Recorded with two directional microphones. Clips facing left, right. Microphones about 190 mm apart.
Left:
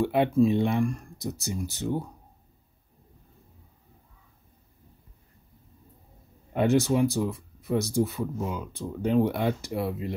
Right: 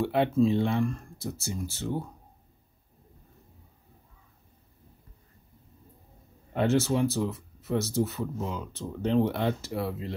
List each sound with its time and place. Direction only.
0.0 s speech: 15° left (ahead or behind)
6.5 s speech: 15° left (ahead or behind)